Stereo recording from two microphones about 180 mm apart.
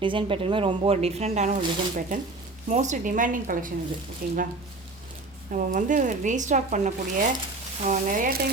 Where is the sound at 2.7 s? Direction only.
40° right (ahead or behind).